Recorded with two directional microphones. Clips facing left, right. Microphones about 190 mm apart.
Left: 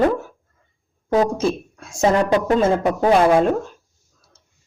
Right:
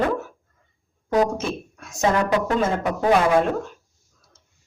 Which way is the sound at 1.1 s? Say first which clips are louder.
Left 3 dB; 30° left (ahead or behind).